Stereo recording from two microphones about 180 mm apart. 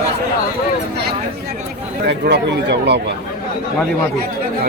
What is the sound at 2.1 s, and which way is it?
Speech, 70° right (ahead or behind).